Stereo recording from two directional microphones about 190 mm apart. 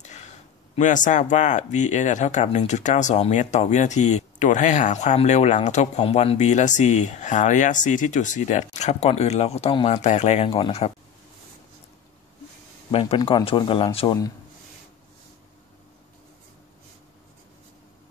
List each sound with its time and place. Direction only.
0.0 s a sound: 35° left (ahead or behind)
0.7 s speech: 40° left (ahead or behind)
12.9 s speech: 30° left (ahead or behind)